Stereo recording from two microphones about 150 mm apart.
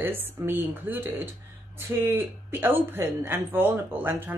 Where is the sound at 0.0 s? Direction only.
15° right (ahead or behind).